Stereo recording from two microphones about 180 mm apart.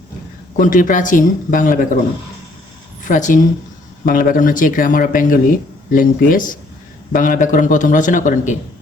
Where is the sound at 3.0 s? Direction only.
45° left (ahead or behind).